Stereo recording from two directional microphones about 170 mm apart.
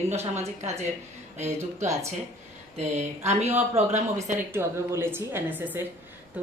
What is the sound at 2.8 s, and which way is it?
Speech, 40° right (ahead or behind).